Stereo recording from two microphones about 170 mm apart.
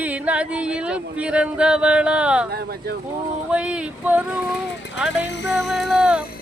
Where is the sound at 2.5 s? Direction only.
65° right (ahead or behind).